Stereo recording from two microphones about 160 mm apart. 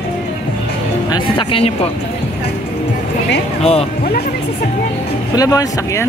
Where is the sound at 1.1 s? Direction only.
35° left (ahead or behind).